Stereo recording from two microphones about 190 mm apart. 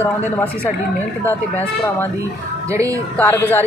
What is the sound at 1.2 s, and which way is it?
Speech, 10° left (ahead or behind).